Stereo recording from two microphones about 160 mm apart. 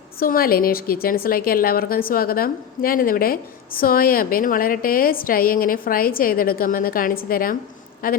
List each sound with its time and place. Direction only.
0.2 s a woman's voice: 65° left (ahead or behind)